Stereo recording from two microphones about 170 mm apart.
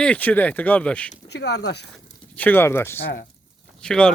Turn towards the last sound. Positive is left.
turn(degrees=5)  # may be behind; listen again after turning